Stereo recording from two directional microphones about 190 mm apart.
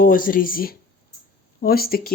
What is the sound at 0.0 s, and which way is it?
Speech, 45° left (ahead or behind).